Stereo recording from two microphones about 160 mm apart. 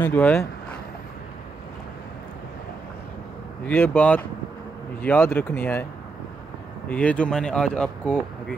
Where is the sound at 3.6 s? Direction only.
10° left (ahead or behind).